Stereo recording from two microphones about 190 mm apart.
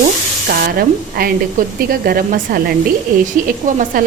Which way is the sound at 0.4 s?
50° right (ahead or behind).